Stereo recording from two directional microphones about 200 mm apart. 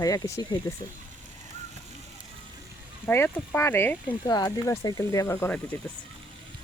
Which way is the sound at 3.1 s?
10° left (ahead or behind).